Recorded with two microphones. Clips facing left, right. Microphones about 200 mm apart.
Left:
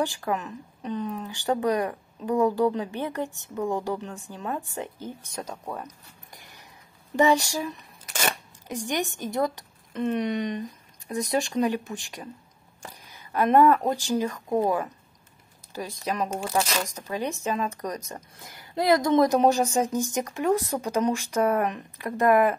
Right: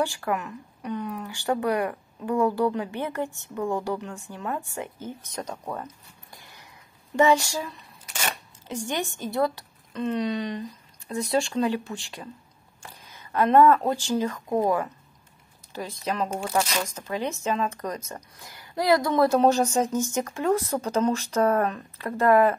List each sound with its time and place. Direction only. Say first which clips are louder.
0.0 s speech: right 1 dB; 15° left (ahead or behind)
5.5 s speech: right 2 dB; centre (ahead or behind)
5.9 s a sound: right 1 dB; 15° left (ahead or behind)
7.2 s speech: right 1 dB; 15° left (ahead or behind)